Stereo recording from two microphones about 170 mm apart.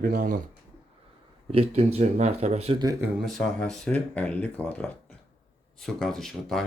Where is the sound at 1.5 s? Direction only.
40° right (ahead or behind).